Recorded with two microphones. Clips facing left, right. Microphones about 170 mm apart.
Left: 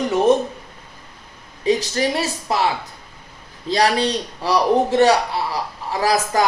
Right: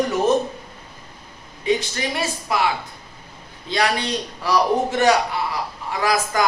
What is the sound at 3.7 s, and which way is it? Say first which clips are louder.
A man's voice: left 4 dB; 35° left (ahead or behind).